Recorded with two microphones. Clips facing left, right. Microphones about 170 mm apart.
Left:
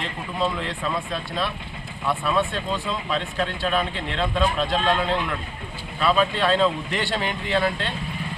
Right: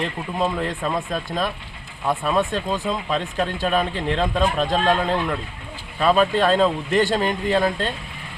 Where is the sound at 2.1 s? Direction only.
45° right (ahead or behind).